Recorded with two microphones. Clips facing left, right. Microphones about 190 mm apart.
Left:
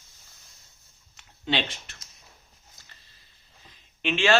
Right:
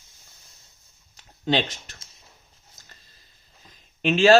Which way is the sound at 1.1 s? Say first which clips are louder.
Right 5 dB; 40° right (ahead or behind).